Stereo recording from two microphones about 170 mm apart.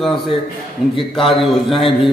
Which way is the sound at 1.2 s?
30° left (ahead or behind).